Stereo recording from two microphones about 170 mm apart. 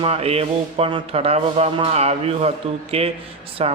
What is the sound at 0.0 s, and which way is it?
Speech, 35° right (ahead or behind).